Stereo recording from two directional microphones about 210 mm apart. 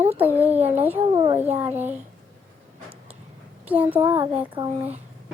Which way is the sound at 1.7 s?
10° right (ahead or behind).